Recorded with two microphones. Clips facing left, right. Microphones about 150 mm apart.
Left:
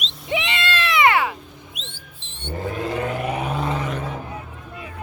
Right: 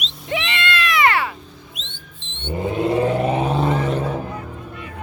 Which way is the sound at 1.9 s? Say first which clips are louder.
Right 2 dB; 35° left (ahead or behind).